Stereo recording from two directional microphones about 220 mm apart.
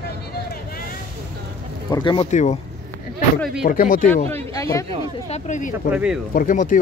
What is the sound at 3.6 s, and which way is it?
Speech, 40° left (ahead or behind).